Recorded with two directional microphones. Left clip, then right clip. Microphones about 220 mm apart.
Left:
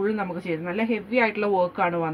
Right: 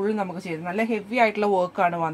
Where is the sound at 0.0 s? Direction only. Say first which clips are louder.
Even; 30° right (ahead or behind).